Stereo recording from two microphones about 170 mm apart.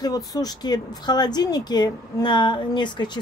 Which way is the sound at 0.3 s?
20° left (ahead or behind).